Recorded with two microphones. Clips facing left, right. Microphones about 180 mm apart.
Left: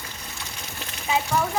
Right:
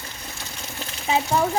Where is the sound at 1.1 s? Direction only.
35° right (ahead or behind).